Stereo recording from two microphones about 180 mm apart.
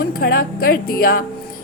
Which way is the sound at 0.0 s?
55° left (ahead or behind).